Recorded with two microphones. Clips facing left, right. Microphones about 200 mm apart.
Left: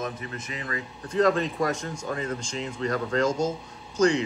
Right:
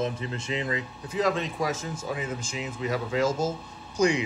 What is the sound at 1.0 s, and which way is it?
Speech, centre (ahead or behind).